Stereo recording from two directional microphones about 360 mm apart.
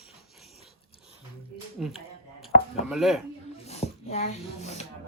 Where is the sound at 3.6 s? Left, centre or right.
Centre.